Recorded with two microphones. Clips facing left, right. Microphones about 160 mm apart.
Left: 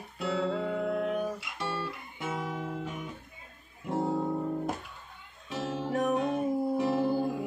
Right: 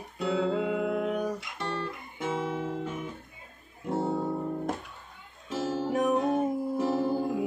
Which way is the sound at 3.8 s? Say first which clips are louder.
Right 1 dB; centre (ahead or behind).